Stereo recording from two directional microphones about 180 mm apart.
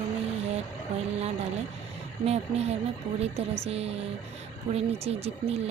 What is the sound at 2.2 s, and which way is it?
Speech, 35° right (ahead or behind).